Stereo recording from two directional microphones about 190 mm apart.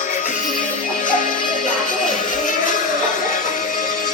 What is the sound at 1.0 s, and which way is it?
Music, 40° left (ahead or behind).